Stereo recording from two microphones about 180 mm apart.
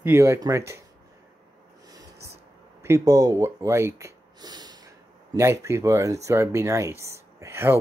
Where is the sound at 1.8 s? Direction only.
20° right (ahead or behind).